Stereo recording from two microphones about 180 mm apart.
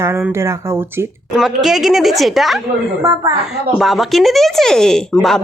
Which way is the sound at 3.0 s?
20° right (ahead or behind).